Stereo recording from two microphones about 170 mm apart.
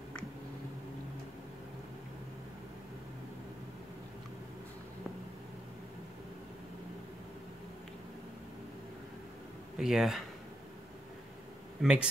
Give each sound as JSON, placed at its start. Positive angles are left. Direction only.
{"t": 9.8, "sound": "speech", "side_deg": -5}
{"t": 11.8, "sound": "speech", "side_deg": -5}